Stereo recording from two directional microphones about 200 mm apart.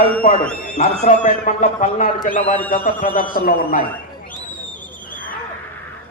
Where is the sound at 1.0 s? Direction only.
35° left (ahead or behind).